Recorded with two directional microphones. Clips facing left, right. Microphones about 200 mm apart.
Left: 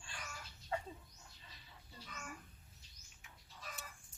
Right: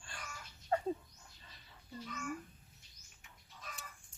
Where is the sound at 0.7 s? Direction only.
45° right (ahead or behind).